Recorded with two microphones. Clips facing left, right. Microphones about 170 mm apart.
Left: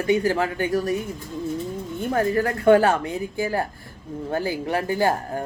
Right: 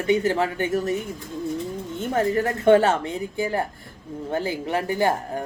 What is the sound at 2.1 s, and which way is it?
Speech, 25° right (ahead or behind).